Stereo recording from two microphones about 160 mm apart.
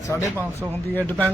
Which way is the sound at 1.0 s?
10° left (ahead or behind).